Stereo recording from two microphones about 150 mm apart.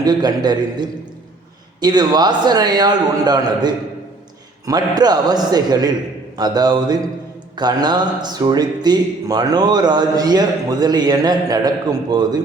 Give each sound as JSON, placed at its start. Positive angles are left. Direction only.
{"t": 0.0, "sound": "speech", "side_deg": -25}